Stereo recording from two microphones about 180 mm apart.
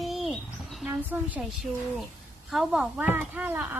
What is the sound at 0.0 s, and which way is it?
Goat, centre (ahead or behind).